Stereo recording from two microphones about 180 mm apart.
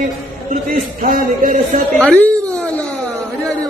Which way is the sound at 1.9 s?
5° left (ahead or behind).